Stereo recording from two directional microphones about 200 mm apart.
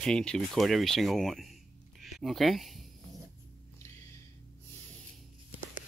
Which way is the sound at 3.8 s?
15° left (ahead or behind).